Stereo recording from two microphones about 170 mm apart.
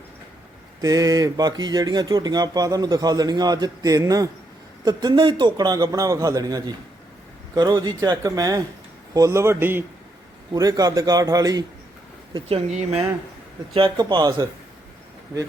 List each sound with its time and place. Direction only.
0.8 s speech: 20° right (ahead or behind)
12.3 s speech: 35° right (ahead or behind)